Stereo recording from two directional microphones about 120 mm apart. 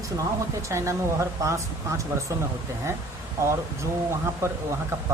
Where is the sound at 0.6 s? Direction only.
25° right (ahead or behind).